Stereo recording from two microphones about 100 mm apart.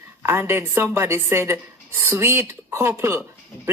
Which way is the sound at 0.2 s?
25° right (ahead or behind).